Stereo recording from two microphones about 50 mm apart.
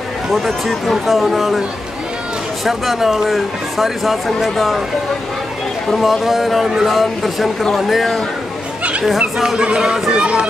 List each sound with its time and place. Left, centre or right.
0.3 s speech: centre
2.6 s speech: centre
5.9 s speech: centre
9.6 s speech: centre